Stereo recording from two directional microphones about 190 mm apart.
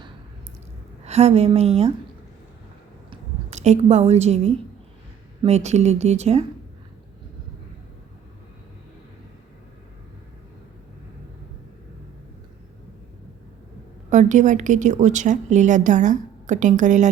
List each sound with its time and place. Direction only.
1.0 s a woman's voice: 35° right (ahead or behind)
3.1 s a woman's voice: 35° right (ahead or behind)
14.1 s a woman's voice: 40° right (ahead or behind)